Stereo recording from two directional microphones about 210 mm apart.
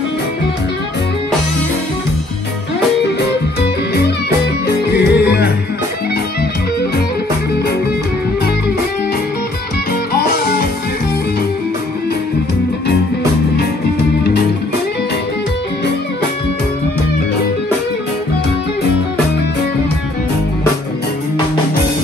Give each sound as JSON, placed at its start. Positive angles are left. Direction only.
{"t": 4.6, "sound": "music", "side_deg": 50}
{"t": 10.1, "sound": "music", "side_deg": 50}